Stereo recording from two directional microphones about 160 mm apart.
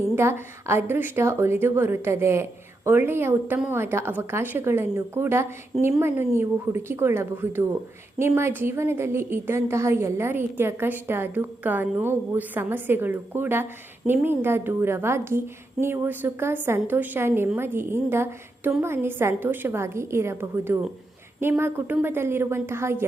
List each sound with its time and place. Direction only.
0.2 s a woman's voice: 15° right (ahead or behind)